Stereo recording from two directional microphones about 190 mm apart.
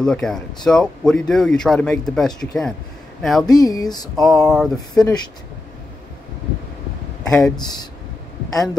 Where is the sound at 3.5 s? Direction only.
20° left (ahead or behind).